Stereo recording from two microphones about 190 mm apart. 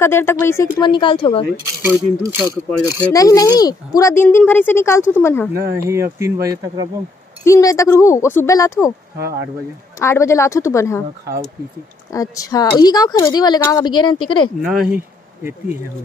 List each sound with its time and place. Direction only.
0.0 s speech: 15° left (ahead or behind); by 1.4 s 30° left (ahead or behind)
1.8 s speech: 10° right (ahead or behind)
3.1 s speech: 20° left (ahead or behind)
5.5 s speech: 15° right (ahead or behind)
7.4 s speech: 15° left (ahead or behind)
9.9 s speech: 15° left (ahead or behind)
12.1 s speech: 20° left (ahead or behind)
14.6 s speech: 5° right (ahead or behind)